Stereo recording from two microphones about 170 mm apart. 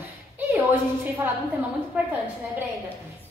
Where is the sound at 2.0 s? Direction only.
10° right (ahead or behind).